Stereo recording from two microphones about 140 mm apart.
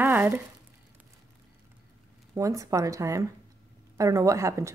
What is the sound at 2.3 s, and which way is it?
A woman's voice, 20° right (ahead or behind).